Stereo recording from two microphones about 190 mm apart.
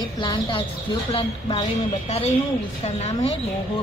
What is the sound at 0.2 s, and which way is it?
A woman's voice, 25° left (ahead or behind).